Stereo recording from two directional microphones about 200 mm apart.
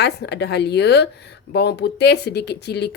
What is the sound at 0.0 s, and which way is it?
Speech, 55° left (ahead or behind).